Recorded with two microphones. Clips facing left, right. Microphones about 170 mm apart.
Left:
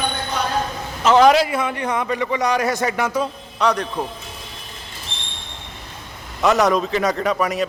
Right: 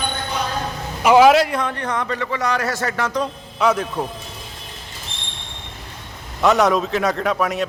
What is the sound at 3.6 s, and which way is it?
Speech, 5° right (ahead or behind).